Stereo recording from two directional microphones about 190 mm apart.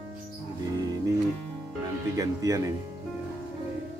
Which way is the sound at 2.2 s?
15° right (ahead or behind).